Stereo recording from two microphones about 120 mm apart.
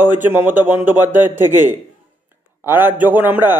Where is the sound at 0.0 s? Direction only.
15° right (ahead or behind).